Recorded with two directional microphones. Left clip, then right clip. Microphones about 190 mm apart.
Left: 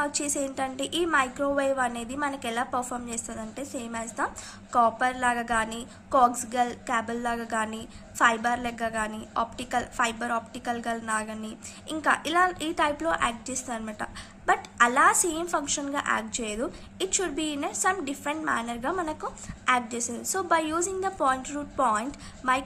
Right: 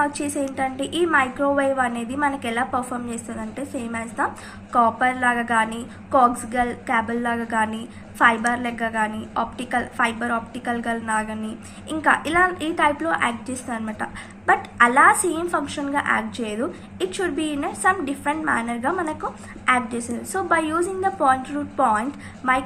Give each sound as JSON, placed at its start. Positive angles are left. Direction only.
{"t": 0.0, "sound": "a woman's voice", "side_deg": 35}